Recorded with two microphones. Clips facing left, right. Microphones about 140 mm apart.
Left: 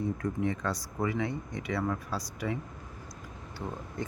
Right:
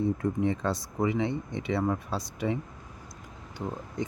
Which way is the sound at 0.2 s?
25° right (ahead or behind).